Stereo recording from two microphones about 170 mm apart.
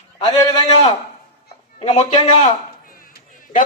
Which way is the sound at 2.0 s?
45° left (ahead or behind).